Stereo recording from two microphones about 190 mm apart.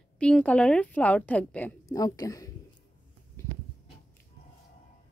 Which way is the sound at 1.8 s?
20° left (ahead or behind).